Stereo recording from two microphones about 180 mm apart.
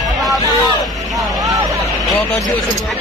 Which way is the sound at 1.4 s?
20° right (ahead or behind).